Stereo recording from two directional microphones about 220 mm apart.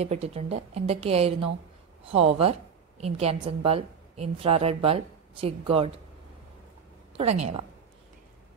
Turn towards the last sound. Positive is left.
turn(degrees=-30)  # may be behind; listen again after turning